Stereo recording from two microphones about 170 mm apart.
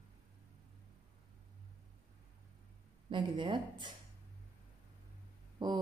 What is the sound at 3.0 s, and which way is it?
Speech, 30° right (ahead or behind).